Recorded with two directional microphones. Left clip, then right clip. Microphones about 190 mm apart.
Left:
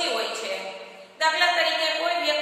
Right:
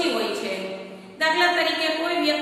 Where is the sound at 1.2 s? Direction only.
Centre (ahead or behind).